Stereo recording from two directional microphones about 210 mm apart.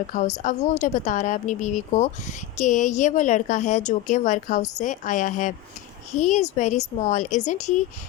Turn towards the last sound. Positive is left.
turn(degrees=35)  # may be behind; listen again after turning